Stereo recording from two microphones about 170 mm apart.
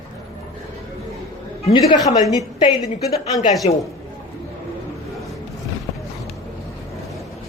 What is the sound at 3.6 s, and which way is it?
Speech, 35° left (ahead or behind).